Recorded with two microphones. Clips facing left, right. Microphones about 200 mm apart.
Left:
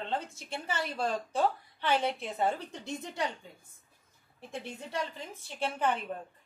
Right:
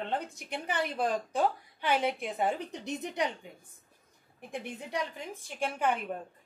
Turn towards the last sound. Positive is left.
turn(degrees=-10)  # may be behind; listen again after turning